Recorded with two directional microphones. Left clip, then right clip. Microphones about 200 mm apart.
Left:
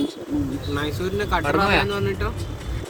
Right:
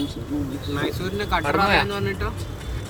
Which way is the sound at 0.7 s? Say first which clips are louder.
Left 1 dB; 25° left (ahead or behind).